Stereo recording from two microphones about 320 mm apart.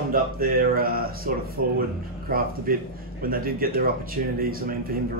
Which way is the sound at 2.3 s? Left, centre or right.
Right.